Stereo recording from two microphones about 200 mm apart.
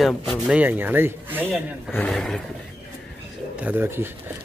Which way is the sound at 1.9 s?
5° left (ahead or behind).